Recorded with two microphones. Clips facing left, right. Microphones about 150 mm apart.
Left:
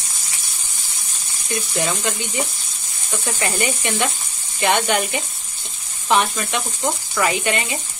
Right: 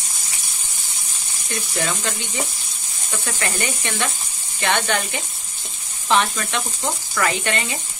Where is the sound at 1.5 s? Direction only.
15° left (ahead or behind).